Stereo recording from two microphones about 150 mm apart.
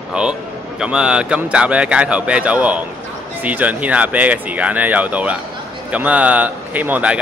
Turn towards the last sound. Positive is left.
turn(degrees=-10)  # may be behind; listen again after turning